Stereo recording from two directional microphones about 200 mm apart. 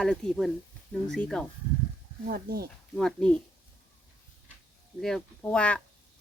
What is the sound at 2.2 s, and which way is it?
Speech, 50° right (ahead or behind).